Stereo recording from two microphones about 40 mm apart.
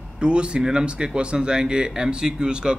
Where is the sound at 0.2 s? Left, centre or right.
Right.